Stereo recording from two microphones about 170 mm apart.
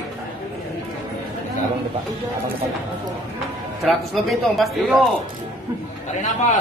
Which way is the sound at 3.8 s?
Centre (ahead or behind).